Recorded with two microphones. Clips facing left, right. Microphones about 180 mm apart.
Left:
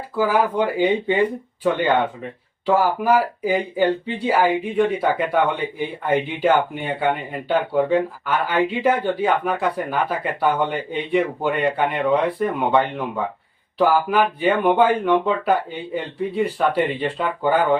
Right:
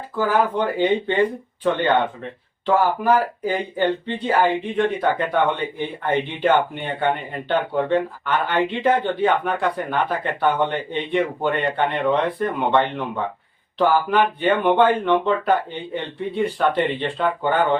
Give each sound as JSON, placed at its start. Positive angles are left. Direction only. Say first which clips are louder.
{"t": 0.2, "sound": "speech", "louder": "left 1 dB", "side_deg": 10}